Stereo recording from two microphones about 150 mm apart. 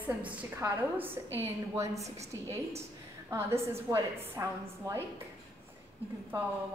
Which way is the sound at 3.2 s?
15° right (ahead or behind).